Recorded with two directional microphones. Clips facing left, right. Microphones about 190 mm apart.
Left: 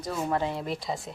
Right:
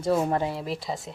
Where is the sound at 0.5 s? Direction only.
Centre (ahead or behind).